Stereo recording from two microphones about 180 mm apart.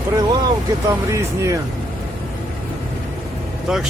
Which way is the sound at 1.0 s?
15° right (ahead or behind).